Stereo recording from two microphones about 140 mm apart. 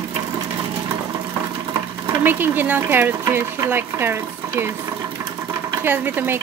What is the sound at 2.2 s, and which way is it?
Speech, 15° right (ahead or behind).